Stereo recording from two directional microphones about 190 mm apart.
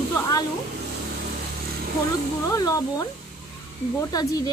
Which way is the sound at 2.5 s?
15° left (ahead or behind).